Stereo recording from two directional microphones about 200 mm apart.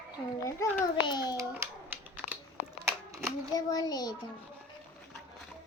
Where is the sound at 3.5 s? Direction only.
20° left (ahead or behind).